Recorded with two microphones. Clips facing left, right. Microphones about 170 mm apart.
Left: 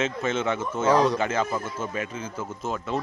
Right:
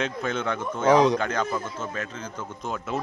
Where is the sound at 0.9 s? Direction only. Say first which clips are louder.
Right 2 dB; 20° right (ahead or behind).